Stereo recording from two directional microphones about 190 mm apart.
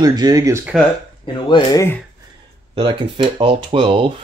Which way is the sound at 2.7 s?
25° right (ahead or behind).